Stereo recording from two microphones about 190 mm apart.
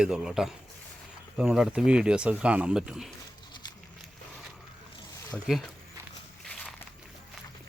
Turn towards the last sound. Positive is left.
turn(degrees=5)  # may be behind; listen again after turning